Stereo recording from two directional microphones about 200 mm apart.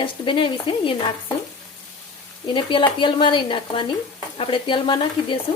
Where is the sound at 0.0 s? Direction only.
25° left (ahead or behind).